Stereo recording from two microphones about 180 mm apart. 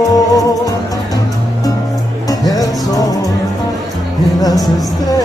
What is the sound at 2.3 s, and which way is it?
Music, 20° left (ahead or behind).